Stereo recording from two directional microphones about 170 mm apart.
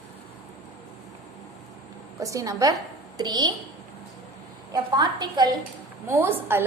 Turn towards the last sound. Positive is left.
turn(degrees=-15)  # may be behind; listen again after turning